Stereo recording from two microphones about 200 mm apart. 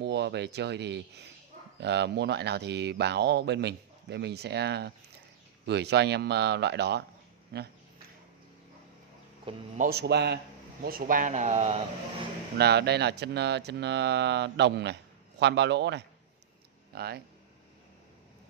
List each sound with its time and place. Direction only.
0.0 s speech: 60° right (ahead or behind)
9.8 s a man's voice: 50° right (ahead or behind); by 11.8 s 35° right (ahead or behind)
12.5 s speech: 55° right (ahead or behind)